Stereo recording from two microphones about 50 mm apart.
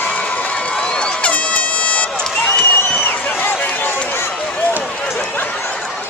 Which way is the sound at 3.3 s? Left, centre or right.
Left.